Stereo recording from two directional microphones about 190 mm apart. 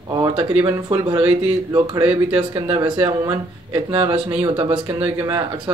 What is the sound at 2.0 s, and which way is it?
Speech, 10° right (ahead or behind).